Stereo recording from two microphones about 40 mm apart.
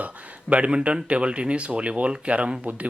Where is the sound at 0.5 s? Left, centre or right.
Right.